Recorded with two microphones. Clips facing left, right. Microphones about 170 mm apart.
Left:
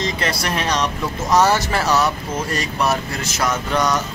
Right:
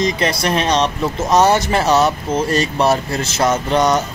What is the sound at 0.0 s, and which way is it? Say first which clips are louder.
Speech: right 5 dB; 20° right (ahead or behind).